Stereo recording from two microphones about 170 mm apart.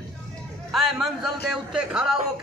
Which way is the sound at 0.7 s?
Centre (ahead or behind).